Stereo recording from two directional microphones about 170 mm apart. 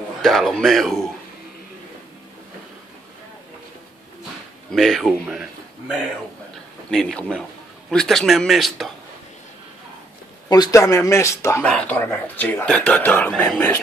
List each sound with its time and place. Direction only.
0.2 s a man's voice: centre (ahead or behind)
4.6 s a man's voice: centre (ahead or behind)
10.5 s a man's voice: 20° left (ahead or behind)
11.6 s a man's voice: 5° left (ahead or behind)